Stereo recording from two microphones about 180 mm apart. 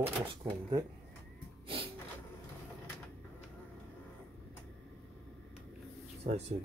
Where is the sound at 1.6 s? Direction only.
30° right (ahead or behind).